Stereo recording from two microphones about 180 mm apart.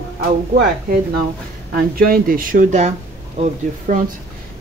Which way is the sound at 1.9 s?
55° right (ahead or behind).